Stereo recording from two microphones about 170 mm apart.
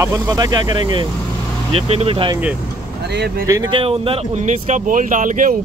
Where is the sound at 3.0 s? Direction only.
75° right (ahead or behind).